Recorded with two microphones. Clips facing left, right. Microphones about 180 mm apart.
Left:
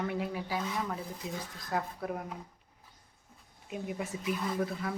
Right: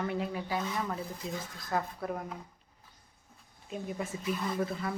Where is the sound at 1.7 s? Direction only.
10° left (ahead or behind).